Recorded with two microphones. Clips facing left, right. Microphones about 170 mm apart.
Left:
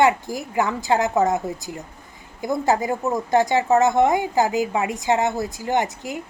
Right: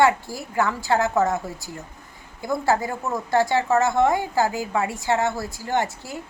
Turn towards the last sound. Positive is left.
turn(degrees=15)  # may be behind; listen again after turning